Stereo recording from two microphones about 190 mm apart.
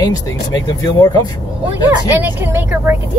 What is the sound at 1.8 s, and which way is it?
Speech, 10° right (ahead or behind).